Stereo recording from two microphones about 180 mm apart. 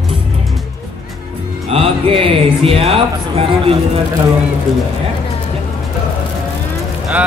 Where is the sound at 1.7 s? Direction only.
30° right (ahead or behind).